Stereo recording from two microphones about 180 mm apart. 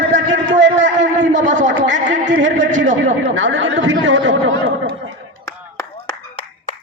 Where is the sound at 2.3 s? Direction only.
90° right.